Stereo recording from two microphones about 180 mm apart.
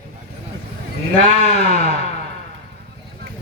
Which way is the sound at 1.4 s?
35° left (ahead or behind).